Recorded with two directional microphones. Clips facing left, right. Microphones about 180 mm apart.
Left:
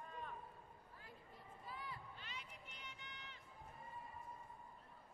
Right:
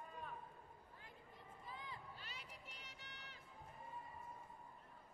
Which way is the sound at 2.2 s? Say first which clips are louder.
Left 1 dB; 40° right (ahead or behind).